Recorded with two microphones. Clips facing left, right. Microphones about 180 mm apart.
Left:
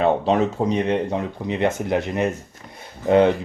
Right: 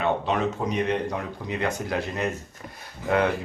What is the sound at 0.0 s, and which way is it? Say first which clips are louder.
Speech: left 6 dB; 30° left (ahead or behind).